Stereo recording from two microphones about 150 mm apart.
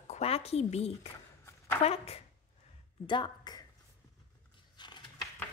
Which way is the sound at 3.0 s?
30° left (ahead or behind).